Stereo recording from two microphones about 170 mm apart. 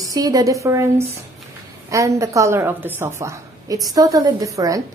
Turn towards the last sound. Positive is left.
turn(degrees=-20)  # may be behind; listen again after turning